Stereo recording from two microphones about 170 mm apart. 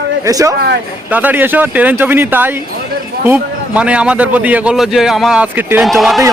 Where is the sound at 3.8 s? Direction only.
5° right (ahead or behind).